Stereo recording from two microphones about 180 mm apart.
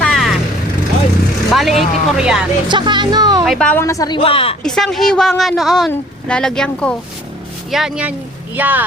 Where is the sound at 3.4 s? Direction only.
Centre (ahead or behind); by 4.5 s 30° left (ahead or behind).